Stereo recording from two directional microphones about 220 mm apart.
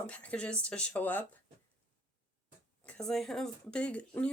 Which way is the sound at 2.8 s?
Centre (ahead or behind).